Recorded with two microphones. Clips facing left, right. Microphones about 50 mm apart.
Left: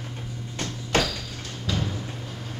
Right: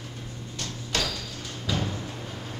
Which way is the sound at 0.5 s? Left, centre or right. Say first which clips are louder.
Left 6 dB; left.